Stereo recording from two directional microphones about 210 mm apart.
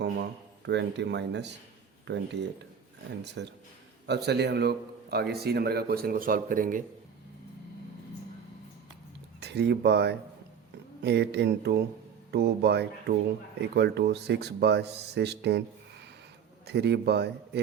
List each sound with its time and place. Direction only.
0.0 s speech: 55° right (ahead or behind); by 6.8 s 40° right (ahead or behind)
9.4 s speech: 55° right (ahead or behind)